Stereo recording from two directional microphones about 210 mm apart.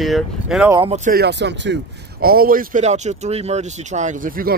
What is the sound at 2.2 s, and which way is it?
Speech, 45° right (ahead or behind).